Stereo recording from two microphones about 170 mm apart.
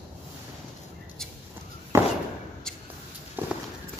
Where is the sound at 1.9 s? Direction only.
15° right (ahead or behind).